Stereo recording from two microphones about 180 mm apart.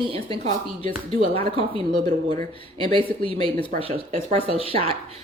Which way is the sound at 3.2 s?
30° left (ahead or behind).